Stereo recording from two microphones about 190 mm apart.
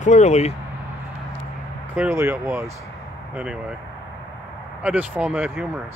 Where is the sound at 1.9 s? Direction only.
10° right (ahead or behind).